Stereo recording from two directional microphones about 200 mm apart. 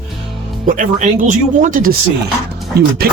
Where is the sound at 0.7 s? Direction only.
40° right (ahead or behind).